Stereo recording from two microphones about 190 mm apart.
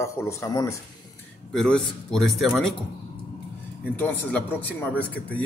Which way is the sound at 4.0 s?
10° left (ahead or behind).